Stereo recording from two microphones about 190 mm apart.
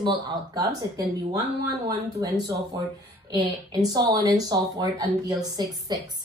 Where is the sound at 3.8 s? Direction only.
20° right (ahead or behind).